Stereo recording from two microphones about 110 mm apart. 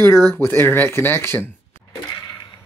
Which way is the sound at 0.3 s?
20° left (ahead or behind).